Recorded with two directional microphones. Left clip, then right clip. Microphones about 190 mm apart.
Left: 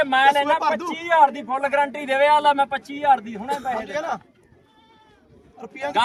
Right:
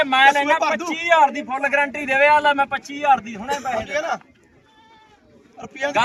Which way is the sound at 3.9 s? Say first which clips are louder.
Right 3 dB; 20° right (ahead or behind).